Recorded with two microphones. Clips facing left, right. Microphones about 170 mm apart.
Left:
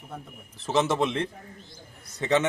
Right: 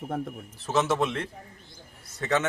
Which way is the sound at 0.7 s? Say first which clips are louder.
Left 1 dB; 15° left (ahead or behind).